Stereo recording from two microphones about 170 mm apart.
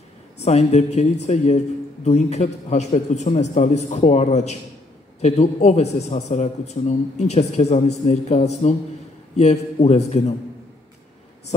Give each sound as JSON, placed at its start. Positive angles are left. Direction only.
{"t": 0.4, "sound": "a man's voice", "side_deg": 40}